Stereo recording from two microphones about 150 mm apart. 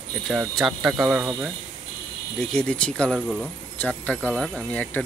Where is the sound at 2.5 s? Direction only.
5° left (ahead or behind).